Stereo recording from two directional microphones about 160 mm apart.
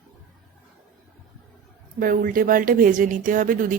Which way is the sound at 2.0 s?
60° right (ahead or behind).